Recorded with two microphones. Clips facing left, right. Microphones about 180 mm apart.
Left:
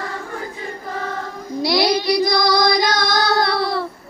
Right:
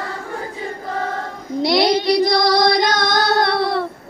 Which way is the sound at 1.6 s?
25° right (ahead or behind).